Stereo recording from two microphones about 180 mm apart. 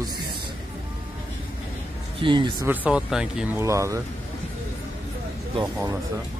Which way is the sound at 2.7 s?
10° right (ahead or behind).